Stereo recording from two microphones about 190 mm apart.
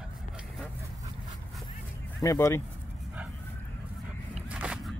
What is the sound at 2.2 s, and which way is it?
Speech, 15° left (ahead or behind).